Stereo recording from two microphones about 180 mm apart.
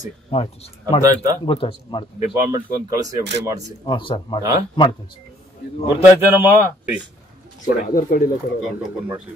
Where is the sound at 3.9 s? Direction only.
25° left (ahead or behind).